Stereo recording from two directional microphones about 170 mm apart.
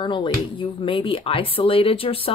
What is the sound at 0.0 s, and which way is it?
Speech, 30° left (ahead or behind).